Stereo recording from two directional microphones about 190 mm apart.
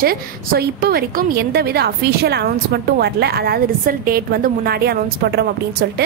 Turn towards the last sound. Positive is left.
turn(degrees=-60)  # may be behind; listen again after turning